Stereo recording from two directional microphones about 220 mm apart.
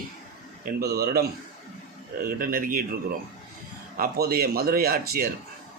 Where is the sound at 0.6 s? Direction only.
45° right (ahead or behind).